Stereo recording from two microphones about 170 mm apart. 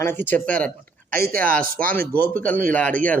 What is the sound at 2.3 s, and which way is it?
Speech, 10° left (ahead or behind).